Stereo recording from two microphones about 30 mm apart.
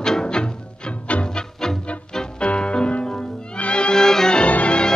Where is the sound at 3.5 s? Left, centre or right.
Left.